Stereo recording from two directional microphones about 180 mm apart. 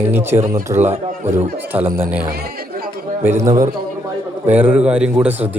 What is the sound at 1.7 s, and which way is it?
A man's voice, 10° right (ahead or behind).